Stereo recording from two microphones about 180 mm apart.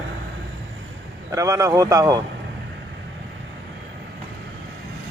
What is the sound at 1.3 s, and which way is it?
Speech, 20° right (ahead or behind).